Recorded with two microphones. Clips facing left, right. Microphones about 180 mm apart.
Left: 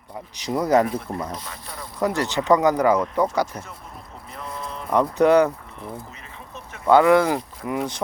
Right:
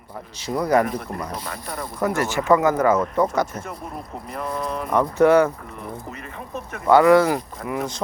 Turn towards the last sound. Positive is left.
turn(degrees=25)  # may be behind; listen again after turning